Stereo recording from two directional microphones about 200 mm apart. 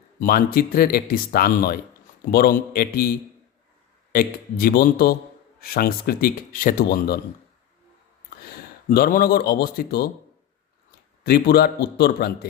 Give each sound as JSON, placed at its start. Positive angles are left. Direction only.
{"t": 0.2, "sound": "speech", "side_deg": 50}
{"t": 4.1, "sound": "speech", "side_deg": 45}
{"t": 8.9, "sound": "speech", "side_deg": 45}
{"t": 11.2, "sound": "speech", "side_deg": 50}